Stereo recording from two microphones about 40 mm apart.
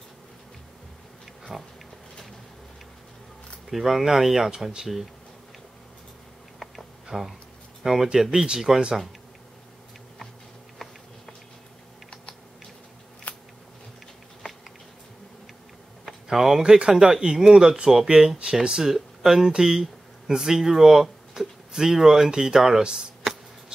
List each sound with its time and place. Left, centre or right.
1.5 s speech: right
3.7 s speech: centre
7.1 s speech: centre
8.3 s speech: centre
13.3 s scissors: left
16.3 s speech: centre